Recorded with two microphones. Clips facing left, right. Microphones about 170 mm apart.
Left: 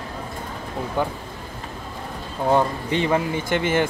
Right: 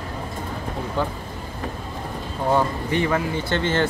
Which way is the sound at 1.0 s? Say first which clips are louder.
Left 1 dB; 15° left (ahead or behind).